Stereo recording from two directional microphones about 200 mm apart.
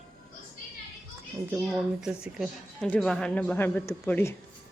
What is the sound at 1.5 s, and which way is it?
A woman's voice, centre (ahead or behind).